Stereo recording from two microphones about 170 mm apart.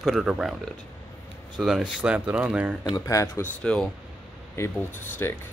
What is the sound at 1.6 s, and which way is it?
Speech, 5° right (ahead or behind).